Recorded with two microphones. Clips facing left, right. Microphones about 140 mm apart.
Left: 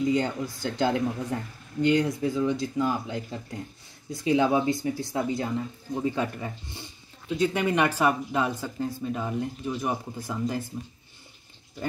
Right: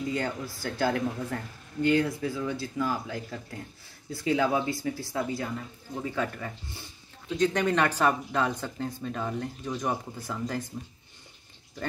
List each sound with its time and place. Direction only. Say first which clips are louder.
0.0 s speech: left 5 dB; 20° left (ahead or behind)